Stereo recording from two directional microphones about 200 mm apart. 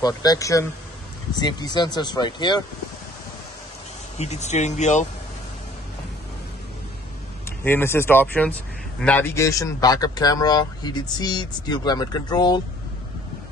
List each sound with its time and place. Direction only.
0.0 s speech: 20° left (ahead or behind)
4.2 s speech: 35° left (ahead or behind)
7.6 s speech: 10° left (ahead or behind)